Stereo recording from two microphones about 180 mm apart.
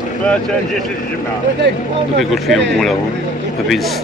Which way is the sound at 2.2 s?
Centre (ahead or behind).